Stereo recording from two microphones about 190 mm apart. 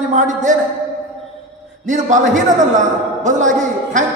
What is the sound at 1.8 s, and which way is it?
Speech, 40° right (ahead or behind).